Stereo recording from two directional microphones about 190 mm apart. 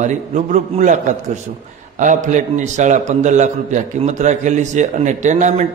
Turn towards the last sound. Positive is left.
turn(degrees=-40)  # may be behind; listen again after turning